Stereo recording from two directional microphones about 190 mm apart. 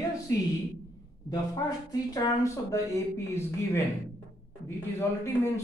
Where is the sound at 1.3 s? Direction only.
20° left (ahead or behind).